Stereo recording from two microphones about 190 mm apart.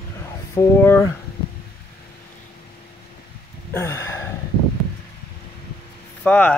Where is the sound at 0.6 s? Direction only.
10° left (ahead or behind).